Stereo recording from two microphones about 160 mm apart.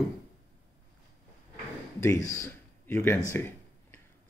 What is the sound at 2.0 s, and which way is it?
Speech, 20° left (ahead or behind).